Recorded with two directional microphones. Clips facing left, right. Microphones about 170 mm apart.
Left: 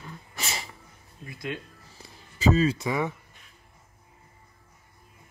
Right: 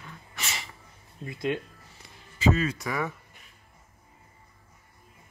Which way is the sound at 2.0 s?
35° left (ahead or behind).